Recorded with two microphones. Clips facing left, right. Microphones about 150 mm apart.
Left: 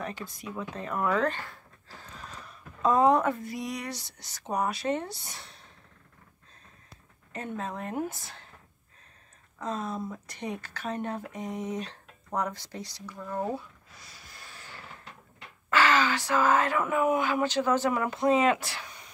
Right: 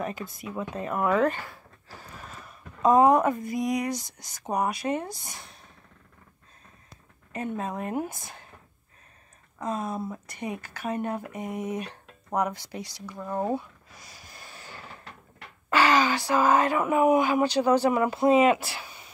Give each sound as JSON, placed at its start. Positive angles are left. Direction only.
{"t": 0.0, "sound": "speech", "side_deg": -5}
{"t": 7.3, "sound": "speech", "side_deg": -10}
{"t": 9.6, "sound": "speech", "side_deg": -10}
{"t": 14.2, "sound": "vehicle", "side_deg": -20}
{"t": 15.7, "sound": "speech", "side_deg": -15}